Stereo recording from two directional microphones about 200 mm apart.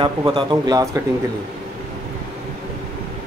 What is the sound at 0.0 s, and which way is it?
Speech, 20° right (ahead or behind).